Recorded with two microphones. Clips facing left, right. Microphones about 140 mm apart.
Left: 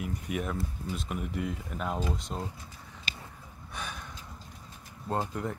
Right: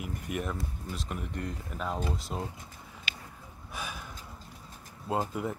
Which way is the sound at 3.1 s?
40° left (ahead or behind).